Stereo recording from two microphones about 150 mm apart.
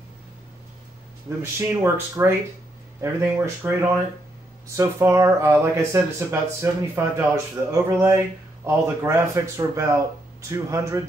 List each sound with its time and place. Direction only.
1.4 s speech: 15° right (ahead or behind)